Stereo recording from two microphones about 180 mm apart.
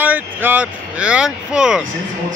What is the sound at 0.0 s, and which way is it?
Speech, 10° right (ahead or behind).